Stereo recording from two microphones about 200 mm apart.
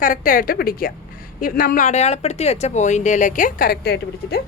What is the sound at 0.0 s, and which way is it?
A woman's voice, 40° left (ahead or behind).